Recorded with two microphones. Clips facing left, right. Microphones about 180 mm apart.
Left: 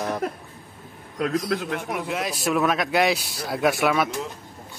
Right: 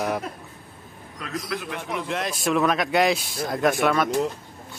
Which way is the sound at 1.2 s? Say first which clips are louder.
Left 7 dB; 55° left (ahead or behind).